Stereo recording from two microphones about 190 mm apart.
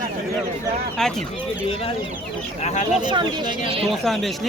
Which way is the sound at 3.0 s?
25° right (ahead or behind).